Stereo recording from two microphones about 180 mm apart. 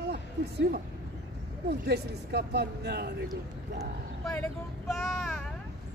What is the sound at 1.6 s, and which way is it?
Speech, 65° right (ahead or behind).